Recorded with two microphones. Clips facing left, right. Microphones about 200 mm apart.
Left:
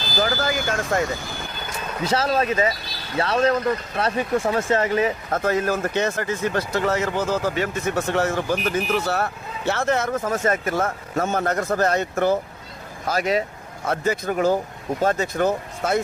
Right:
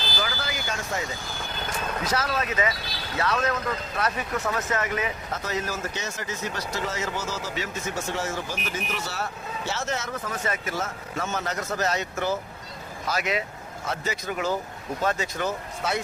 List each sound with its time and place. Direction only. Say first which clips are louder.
0.2 s speech: left 11 dB; 45° left (ahead or behind)
2.0 s speech: left 8 dB; 30° left (ahead or behind)
5.3 s speech: left 8 dB; 50° left (ahead or behind)
13.1 s speech: left 6 dB; 40° left (ahead or behind)
13.8 s speech: left 8 dB; 55° left (ahead or behind)